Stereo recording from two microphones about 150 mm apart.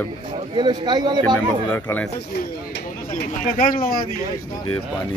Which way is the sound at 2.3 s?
90° left.